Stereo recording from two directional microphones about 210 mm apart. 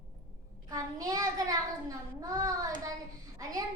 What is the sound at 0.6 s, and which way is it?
Child singing, 15° right (ahead or behind).